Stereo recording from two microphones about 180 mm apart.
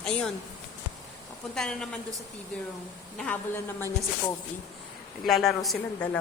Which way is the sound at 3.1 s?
5° left (ahead or behind).